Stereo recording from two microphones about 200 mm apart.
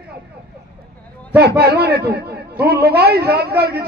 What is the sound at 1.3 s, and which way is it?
A man's voice, 55° right (ahead or behind).